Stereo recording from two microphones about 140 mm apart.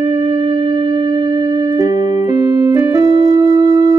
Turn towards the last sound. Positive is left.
turn(degrees=-25)  # may be behind; listen again after turning